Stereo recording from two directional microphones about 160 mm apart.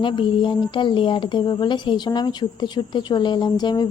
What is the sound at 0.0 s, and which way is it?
Speech, 30° left (ahead or behind).